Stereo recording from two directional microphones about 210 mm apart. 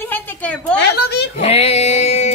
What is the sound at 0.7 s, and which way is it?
Speech, 50° left (ahead or behind).